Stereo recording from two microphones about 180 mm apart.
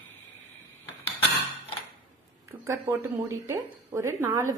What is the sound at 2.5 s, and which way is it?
Speech, 15° right (ahead or behind).